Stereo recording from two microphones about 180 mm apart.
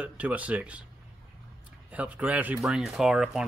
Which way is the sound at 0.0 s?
10° right (ahead or behind).